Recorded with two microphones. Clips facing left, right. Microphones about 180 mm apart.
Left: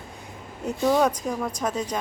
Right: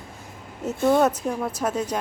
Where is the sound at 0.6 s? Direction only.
Centre (ahead or behind).